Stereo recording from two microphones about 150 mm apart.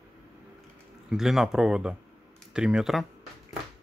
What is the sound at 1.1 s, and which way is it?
Speech, 5° right (ahead or behind).